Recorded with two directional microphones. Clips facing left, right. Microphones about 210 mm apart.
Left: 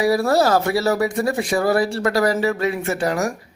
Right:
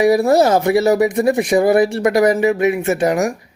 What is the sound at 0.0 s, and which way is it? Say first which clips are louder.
Speech: right 5 dB; 20° right (ahead or behind).